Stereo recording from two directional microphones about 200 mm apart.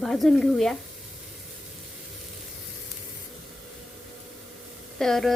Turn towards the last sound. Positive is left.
turn(degrees=0)  # may be behind; listen again after turning